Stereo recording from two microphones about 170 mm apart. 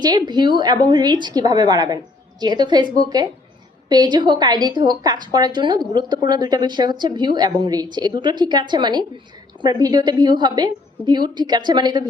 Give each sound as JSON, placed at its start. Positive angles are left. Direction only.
{"t": 0.0, "sound": "a woman's voice", "side_deg": -25}